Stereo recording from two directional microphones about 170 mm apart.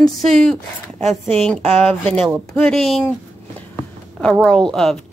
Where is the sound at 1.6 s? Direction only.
35° right (ahead or behind).